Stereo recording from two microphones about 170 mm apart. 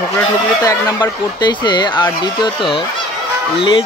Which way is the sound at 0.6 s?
20° left (ahead or behind).